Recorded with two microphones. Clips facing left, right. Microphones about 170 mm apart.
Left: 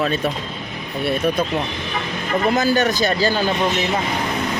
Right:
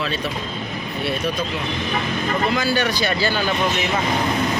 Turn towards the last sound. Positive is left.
turn(degrees=40)  # may be behind; listen again after turning